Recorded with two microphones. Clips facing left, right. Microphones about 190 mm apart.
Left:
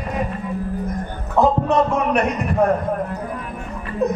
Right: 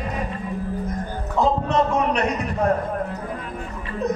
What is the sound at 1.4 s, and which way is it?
Speech, 55° left (ahead or behind).